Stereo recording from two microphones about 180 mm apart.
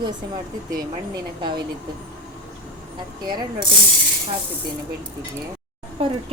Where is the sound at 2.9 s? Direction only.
25° right (ahead or behind).